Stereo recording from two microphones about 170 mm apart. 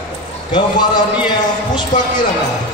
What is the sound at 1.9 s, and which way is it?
Speech, 50° left (ahead or behind).